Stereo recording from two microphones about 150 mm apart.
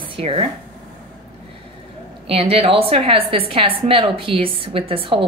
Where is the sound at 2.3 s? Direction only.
40° right (ahead or behind).